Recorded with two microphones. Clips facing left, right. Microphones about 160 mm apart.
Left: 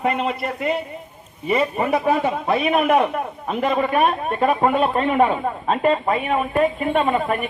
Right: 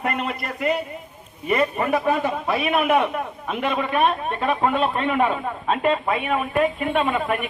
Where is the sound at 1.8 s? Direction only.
30° left (ahead or behind).